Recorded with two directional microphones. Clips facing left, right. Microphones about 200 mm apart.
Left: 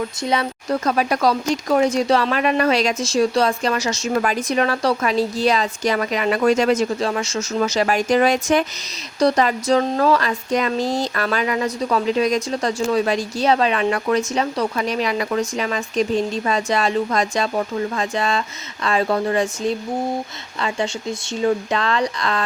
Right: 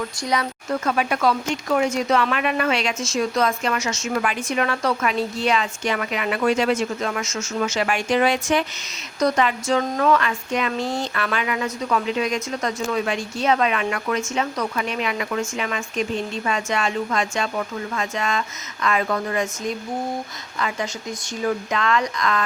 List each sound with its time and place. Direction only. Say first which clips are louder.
0.2 s speech: left 2 dB; 25° left (ahead or behind)